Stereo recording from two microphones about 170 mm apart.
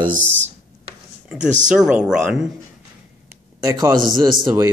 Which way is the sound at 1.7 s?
5° right (ahead or behind).